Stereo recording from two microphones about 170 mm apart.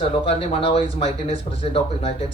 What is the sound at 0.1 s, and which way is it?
Speech, 35° left (ahead or behind).